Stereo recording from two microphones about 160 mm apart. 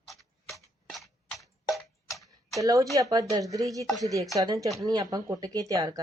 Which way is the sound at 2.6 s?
20° right (ahead or behind).